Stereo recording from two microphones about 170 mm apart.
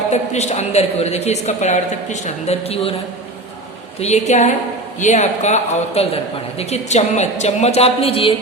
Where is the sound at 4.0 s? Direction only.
40° left (ahead or behind).